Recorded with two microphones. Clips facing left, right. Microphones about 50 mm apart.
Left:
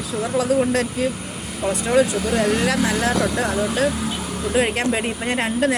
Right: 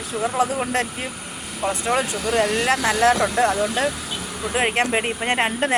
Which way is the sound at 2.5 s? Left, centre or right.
Right.